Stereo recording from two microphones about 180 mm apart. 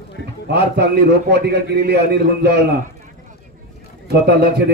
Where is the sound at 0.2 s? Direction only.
65° right (ahead or behind).